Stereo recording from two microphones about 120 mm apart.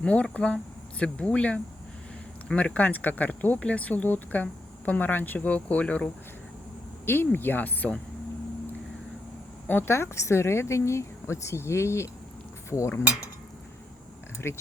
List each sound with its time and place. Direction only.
0.0 s speech: 10° left (ahead or behind)
9.6 s a woman's voice: 15° left (ahead or behind)
14.4 s a woman's voice: 20° left (ahead or behind)